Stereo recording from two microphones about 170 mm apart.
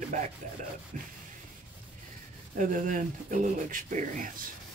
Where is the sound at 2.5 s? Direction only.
50° right (ahead or behind).